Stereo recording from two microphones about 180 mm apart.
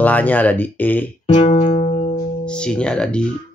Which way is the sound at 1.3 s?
30° left (ahead or behind).